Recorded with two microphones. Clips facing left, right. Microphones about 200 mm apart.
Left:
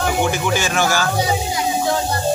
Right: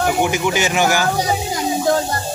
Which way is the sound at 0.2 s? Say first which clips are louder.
Right 1 dB; 15° right (ahead or behind).